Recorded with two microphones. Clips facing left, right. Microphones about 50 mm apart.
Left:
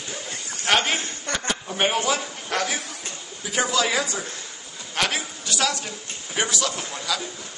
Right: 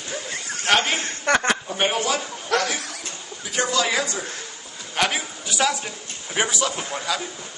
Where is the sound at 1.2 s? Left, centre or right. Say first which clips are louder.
Right 8 dB; right.